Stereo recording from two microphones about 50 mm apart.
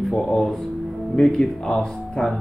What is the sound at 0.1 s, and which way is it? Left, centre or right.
Speech, centre.